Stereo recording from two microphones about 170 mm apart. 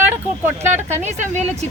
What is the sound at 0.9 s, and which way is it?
Speech, 45° right (ahead or behind).